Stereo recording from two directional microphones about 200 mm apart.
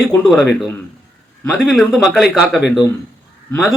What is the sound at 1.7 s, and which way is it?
Speech, centre (ahead or behind).